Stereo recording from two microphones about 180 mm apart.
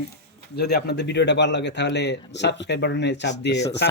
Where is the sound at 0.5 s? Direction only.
65° left (ahead or behind).